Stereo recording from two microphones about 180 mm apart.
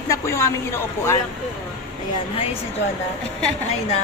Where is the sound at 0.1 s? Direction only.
15° left (ahead or behind).